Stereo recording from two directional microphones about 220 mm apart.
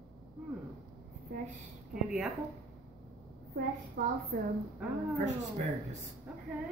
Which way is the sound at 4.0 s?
40° right (ahead or behind).